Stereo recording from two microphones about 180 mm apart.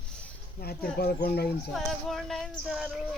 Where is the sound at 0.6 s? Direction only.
60° left (ahead or behind).